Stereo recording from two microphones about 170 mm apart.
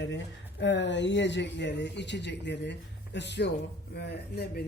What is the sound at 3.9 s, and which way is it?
Speech, 75° left (ahead or behind).